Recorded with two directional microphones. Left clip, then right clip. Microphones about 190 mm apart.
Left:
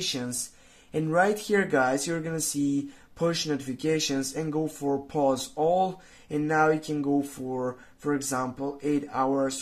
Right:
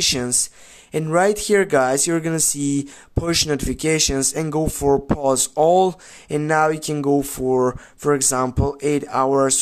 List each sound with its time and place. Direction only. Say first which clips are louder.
0.9 s speech: right 6 dB; 40° right (ahead or behind)